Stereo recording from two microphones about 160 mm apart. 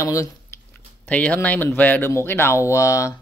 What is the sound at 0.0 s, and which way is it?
Speech, 20° left (ahead or behind).